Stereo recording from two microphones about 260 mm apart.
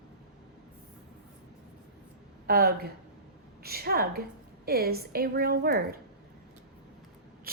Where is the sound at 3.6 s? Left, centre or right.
Right.